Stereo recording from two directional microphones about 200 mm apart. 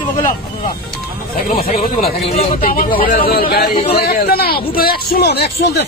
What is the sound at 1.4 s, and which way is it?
Speech, 45° left (ahead or behind).